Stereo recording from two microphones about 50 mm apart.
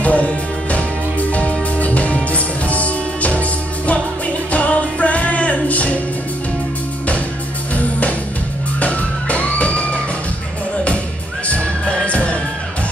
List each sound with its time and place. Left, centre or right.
0.0 s music: left
4.5 s music: left
7.7 s music: left
11.4 s music: left